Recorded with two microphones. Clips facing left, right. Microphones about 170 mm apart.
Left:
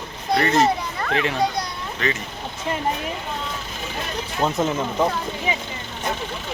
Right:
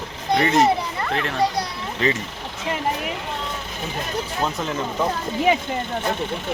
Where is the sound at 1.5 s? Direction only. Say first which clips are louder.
Right 2 dB; 30° right (ahead or behind).